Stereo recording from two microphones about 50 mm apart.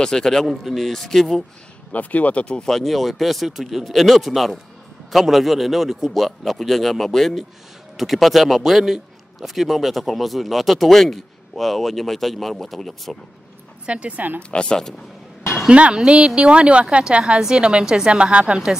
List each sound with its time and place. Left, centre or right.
0.0 s speech: centre
1.9 s speech: left
2.7 s a man's voice: centre
13.8 s a woman's voice: right
14.5 s speech: centre
15.7 s a woman's voice: right